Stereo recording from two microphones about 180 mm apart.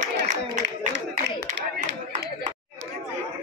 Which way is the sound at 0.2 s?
70° right (ahead or behind).